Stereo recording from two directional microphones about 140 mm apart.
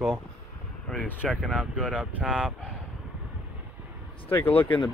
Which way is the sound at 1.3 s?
Centre (ahead or behind).